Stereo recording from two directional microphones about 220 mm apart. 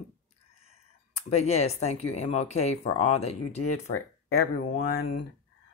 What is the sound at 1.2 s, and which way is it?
Speech, 30° left (ahead or behind).